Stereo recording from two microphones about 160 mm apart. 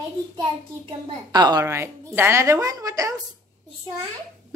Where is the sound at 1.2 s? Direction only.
25° right (ahead or behind).